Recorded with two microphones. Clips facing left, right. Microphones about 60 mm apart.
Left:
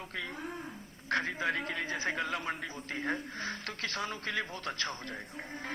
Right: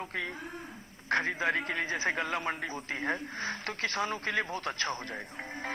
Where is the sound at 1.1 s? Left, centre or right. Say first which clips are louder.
Right 3 dB; right.